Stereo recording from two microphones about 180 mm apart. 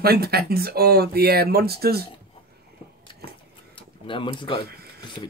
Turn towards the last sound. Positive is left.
turn(degrees=30)  # may be behind; listen again after turning